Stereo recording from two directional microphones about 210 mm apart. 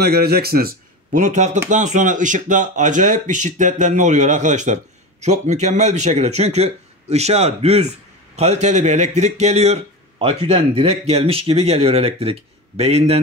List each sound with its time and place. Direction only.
0.0 s speech: 50° right (ahead or behind); by 13.2 s 30° right (ahead or behind)